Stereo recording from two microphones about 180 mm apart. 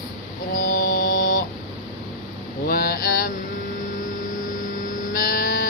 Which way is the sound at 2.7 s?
55° left (ahead or behind).